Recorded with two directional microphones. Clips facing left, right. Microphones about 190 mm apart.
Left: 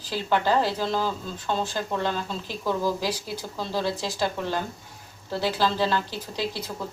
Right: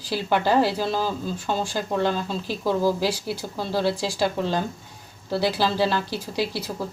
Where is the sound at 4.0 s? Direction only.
10° right (ahead or behind).